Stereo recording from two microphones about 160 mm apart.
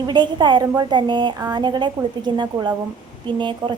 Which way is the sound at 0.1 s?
30° right (ahead or behind).